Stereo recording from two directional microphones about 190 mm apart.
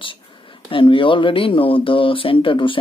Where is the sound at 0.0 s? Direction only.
25° left (ahead or behind).